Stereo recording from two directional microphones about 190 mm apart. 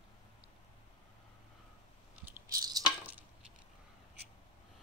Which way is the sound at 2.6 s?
20° right (ahead or behind).